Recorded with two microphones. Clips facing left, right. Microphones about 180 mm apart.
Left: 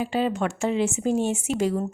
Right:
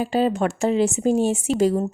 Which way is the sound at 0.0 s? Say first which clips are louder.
Right 4 dB; 40° right (ahead or behind).